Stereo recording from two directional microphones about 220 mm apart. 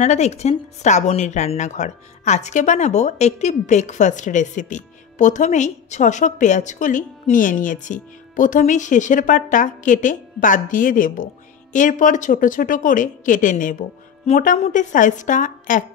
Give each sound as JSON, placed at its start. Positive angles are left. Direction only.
{"t": 0.0, "sound": "a woman's voice", "side_deg": 30}